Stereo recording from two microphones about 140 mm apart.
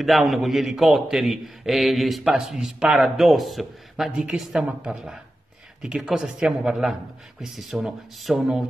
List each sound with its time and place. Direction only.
0.0 s a man's voice: centre (ahead or behind)